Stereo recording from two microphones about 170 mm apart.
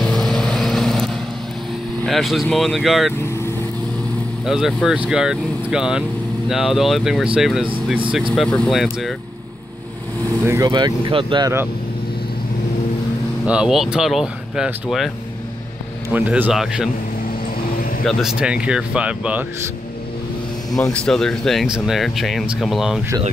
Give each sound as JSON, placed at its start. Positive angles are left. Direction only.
{"t": 0.0, "sound": "vehicle", "side_deg": 0}
{"t": 2.0, "sound": "speech", "side_deg": 0}
{"t": 4.5, "sound": "speech", "side_deg": 0}
{"t": 10.4, "sound": "speech", "side_deg": -15}
{"t": 13.5, "sound": "speech", "side_deg": -5}
{"t": 16.1, "sound": "speech", "side_deg": -10}
{"t": 18.0, "sound": "speech", "side_deg": -5}
{"t": 20.9, "sound": "speech", "side_deg": 5}